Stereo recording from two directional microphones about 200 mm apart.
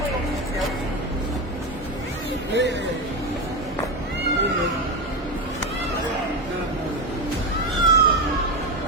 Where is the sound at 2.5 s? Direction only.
60° right (ahead or behind).